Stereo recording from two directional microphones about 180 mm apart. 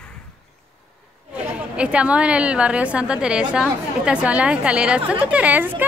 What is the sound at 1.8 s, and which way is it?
A woman's voice, 5° right (ahead or behind).